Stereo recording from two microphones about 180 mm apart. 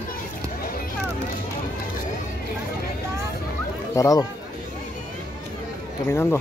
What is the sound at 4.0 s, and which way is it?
Speech, 20° left (ahead or behind).